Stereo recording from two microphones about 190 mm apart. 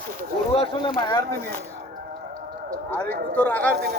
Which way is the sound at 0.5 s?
30° left (ahead or behind).